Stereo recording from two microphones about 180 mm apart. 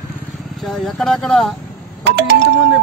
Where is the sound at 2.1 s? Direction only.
75° right (ahead or behind).